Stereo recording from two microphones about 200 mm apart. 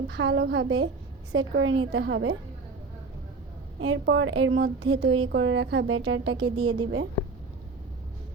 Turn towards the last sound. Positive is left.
turn(degrees=-85)